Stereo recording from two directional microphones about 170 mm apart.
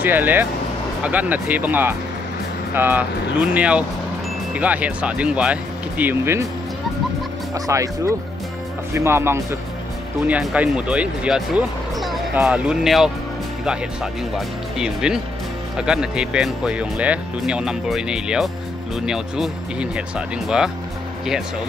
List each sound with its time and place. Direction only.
0.0 s speech: 10° right (ahead or behind)
7.5 s speech: 20° right (ahead or behind); by 13.1 s centre (ahead or behind)
14.3 s speech: 5° right (ahead or behind)